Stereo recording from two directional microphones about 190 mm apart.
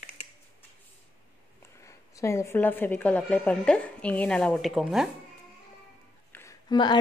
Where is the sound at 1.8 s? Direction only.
15° left (ahead or behind); by 5.1 s centre (ahead or behind).